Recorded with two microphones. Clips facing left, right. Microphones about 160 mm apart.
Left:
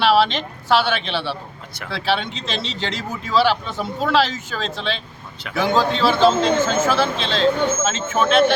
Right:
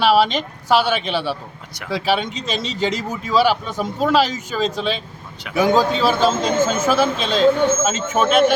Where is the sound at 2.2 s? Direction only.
45° right (ahead or behind).